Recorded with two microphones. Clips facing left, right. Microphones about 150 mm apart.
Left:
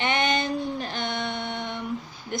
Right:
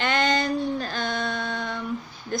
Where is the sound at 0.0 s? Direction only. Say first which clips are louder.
Right 1 dB; 20° left (ahead or behind).